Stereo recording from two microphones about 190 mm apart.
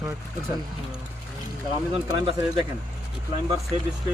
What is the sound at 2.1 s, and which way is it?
Speech, 20° right (ahead or behind).